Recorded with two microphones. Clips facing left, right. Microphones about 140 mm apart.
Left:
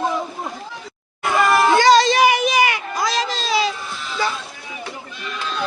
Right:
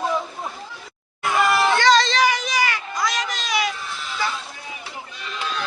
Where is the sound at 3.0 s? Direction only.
30° left (ahead or behind).